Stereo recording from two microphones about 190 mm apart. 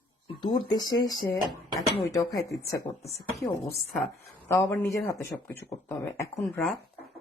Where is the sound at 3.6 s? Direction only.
Centre (ahead or behind).